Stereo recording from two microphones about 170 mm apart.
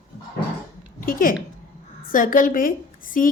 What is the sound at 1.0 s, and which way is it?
A woman's voice, 55° left (ahead or behind).